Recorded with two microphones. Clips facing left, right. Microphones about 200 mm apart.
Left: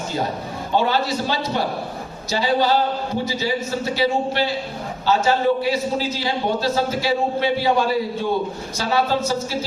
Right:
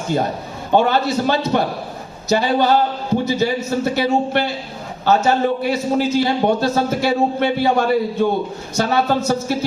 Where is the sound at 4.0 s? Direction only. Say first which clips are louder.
Even; 55° right (ahead or behind).